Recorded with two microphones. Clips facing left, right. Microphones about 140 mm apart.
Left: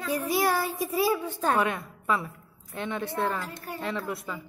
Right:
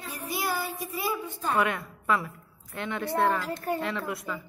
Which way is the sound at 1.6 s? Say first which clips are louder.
Even; 20° left (ahead or behind).